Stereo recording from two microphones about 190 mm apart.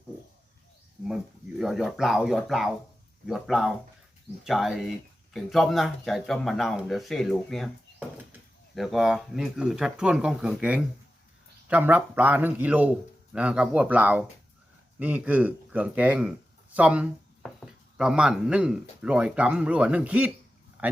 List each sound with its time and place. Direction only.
1.0 s a man's voice: centre (ahead or behind)